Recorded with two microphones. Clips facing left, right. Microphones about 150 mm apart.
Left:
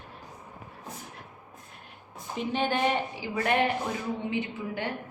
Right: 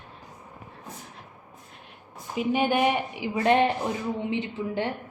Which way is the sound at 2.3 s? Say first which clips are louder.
Right 5 dB; 10° right (ahead or behind).